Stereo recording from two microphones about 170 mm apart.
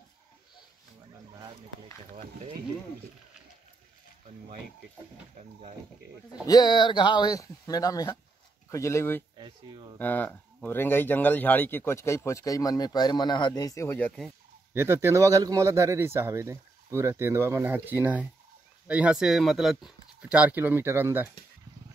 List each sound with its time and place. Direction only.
2.1 s speech: 45° right (ahead or behind)
6.4 s speech: 25° left (ahead or behind)
9.4 s speech: 30° right (ahead or behind)
9.9 s speech: 10° left (ahead or behind)
14.7 s a man's voice: 15° right (ahead or behind)